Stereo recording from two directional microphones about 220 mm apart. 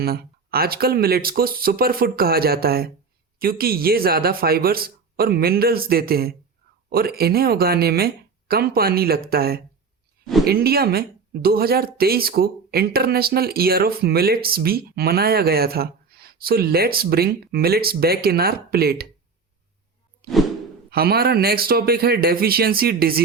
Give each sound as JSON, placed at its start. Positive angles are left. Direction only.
{"t": 0.0, "sound": "speech", "side_deg": -45}
{"t": 20.2, "sound": "whoosh", "side_deg": -45}
{"t": 20.9, "sound": "speech", "side_deg": -45}